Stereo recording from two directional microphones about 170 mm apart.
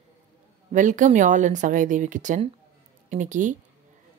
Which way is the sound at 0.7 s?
50° right (ahead or behind).